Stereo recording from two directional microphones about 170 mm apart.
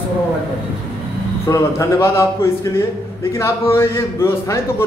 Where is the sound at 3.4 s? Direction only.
15° left (ahead or behind).